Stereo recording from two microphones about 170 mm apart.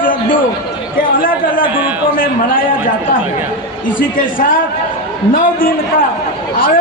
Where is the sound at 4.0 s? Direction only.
55° left (ahead or behind).